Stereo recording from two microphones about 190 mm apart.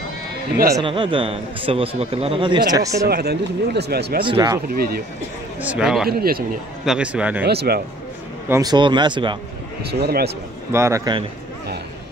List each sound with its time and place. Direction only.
0.7 s a man's voice: 25° right (ahead or behind)
3.1 s a man's voice: 55° right (ahead or behind)
4.2 s a man's voice: 25° right (ahead or behind)
5.6 s a man's voice: 5° right (ahead or behind)
6.0 s speech: 50° right (ahead or behind)
6.8 s a man's voice: 5° right (ahead or behind)
7.4 s a man's voice: 55° right (ahead or behind)
8.5 s a man's voice: 20° right (ahead or behind)
9.8 s a man's voice: 55° right (ahead or behind)
10.7 s a man's voice: 15° right (ahead or behind)